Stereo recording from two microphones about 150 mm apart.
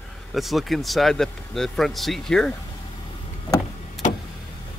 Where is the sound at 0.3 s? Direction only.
Centre (ahead or behind).